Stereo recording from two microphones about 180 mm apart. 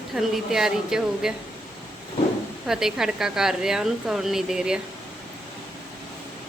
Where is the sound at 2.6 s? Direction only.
Centre (ahead or behind).